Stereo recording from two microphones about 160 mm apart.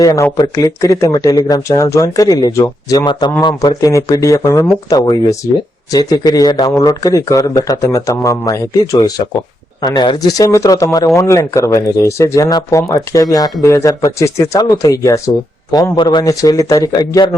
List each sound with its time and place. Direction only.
0.0 s speech: 20° left (ahead or behind)